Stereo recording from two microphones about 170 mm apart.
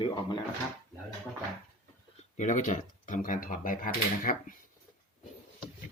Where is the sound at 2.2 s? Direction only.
45° left (ahead or behind).